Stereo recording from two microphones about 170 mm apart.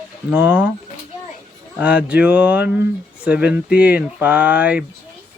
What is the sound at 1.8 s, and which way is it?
Speech, 5° right (ahead or behind).